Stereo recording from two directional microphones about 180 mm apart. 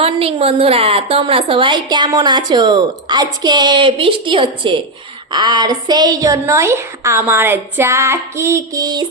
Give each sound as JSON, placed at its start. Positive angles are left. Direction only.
{"t": 0.0, "sound": "a woman's voice", "side_deg": -30}